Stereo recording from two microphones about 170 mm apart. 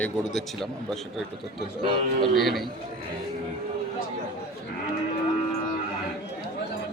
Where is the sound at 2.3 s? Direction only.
Centre (ahead or behind).